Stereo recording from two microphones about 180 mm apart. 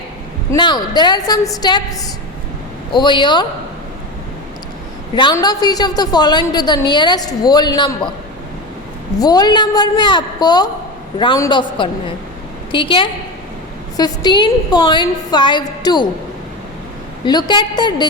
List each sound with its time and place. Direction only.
0.5 s a woman's voice: 25° left (ahead or behind)
5.1 s a woman's voice: 25° left (ahead or behind)
9.1 s a woman's voice: 20° left (ahead or behind)
17.2 s a woman's voice: 25° left (ahead or behind)